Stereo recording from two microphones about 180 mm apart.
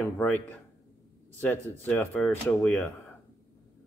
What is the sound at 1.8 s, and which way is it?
A man's voice, 10° left (ahead or behind).